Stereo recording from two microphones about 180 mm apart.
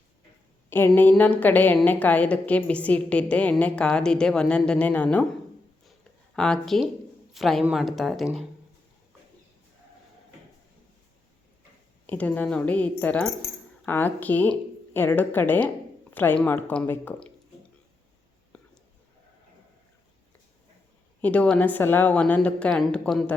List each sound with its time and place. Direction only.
0.7 s a woman's voice: 10° left (ahead or behind)
6.3 s speech: 5° left (ahead or behind)
12.0 s a woman's voice: 10° left (ahead or behind)
21.2 s a woman's voice: 10° left (ahead or behind)